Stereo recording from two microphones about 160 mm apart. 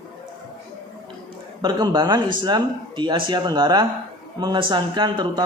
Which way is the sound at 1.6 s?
25° right (ahead or behind).